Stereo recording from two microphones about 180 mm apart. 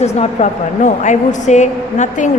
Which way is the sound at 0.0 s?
35° left (ahead or behind).